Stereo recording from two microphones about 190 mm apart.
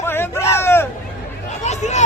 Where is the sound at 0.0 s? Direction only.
10° left (ahead or behind).